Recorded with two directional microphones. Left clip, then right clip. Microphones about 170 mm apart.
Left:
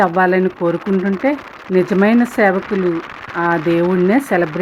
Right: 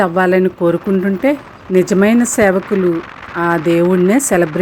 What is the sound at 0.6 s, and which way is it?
Speech, 45° right (ahead or behind).